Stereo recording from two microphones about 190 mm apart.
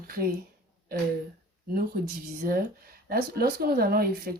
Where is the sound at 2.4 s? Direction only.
50° right (ahead or behind).